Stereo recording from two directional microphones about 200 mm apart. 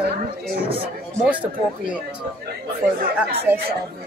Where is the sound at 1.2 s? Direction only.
5° right (ahead or behind).